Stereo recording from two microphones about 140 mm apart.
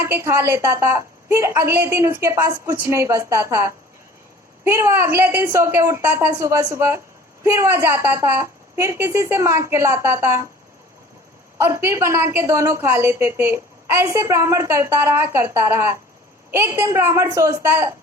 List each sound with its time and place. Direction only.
0.0 s a woman's voice: 20° right (ahead or behind)
11.6 s a woman's voice: 20° right (ahead or behind)